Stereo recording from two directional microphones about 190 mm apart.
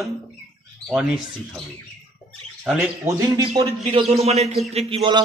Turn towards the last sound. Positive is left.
turn(degrees=-25)  # may be behind; listen again after turning